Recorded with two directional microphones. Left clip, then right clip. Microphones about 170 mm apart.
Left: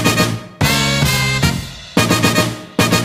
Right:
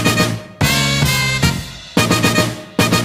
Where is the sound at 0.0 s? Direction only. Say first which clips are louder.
Even; centre (ahead or behind).